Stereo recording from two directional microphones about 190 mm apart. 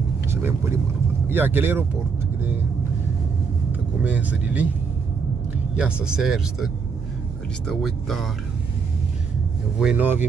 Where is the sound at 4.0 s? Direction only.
5° right (ahead or behind).